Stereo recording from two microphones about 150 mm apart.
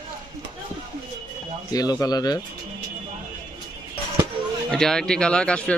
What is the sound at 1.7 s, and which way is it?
Speech, 25° left (ahead or behind).